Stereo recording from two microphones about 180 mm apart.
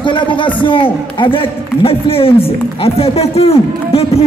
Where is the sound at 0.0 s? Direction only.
25° left (ahead or behind).